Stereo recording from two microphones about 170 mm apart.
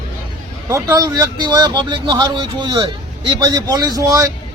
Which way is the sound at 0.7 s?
15° right (ahead or behind).